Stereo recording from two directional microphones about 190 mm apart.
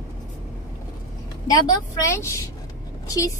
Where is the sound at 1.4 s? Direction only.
20° left (ahead or behind).